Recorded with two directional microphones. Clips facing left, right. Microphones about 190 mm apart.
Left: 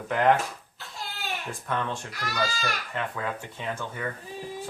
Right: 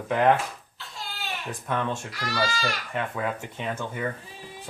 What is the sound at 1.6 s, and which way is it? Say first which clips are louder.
Speech: right 3 dB; 25° right (ahead or behind).